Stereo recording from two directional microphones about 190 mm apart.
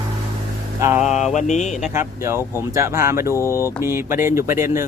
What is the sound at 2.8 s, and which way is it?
Speech, 15° right (ahead or behind).